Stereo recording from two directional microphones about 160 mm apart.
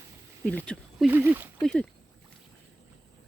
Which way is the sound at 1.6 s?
5° left (ahead or behind).